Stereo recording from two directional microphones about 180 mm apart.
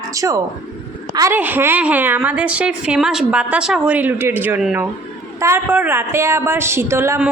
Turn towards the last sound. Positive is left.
turn(degrees=-10)  # may be behind; listen again after turning